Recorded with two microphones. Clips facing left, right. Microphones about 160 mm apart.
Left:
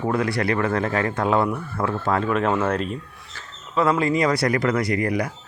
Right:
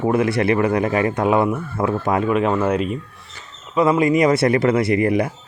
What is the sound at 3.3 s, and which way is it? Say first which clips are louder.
Speech: right 4 dB; 15° right (ahead or behind).